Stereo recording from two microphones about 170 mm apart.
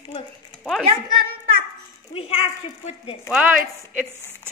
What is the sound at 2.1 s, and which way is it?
Speech, 35° left (ahead or behind).